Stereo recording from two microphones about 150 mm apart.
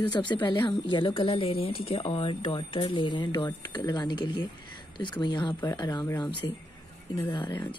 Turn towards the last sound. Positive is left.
turn(degrees=30)  # may be behind; listen again after turning